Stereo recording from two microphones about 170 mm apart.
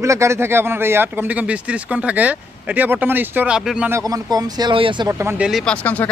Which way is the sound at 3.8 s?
20° right (ahead or behind).